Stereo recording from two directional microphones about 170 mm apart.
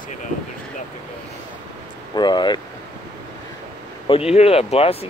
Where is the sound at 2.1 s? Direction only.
25° left (ahead or behind).